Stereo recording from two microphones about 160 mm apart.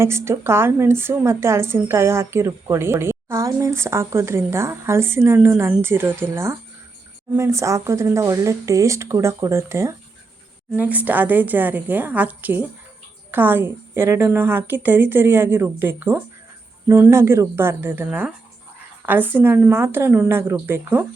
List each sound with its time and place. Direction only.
0.0 s speech: 15° right (ahead or behind)